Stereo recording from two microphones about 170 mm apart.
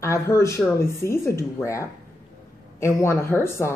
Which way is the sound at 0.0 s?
15° left (ahead or behind).